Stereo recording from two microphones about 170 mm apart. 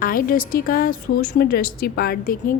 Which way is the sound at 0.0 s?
55° left (ahead or behind).